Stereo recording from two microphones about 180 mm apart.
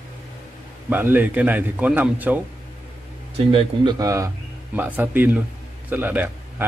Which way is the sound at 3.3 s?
30° right (ahead or behind).